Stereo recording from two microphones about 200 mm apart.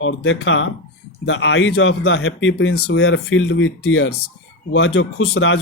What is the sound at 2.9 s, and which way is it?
Speech, 75° left (ahead or behind).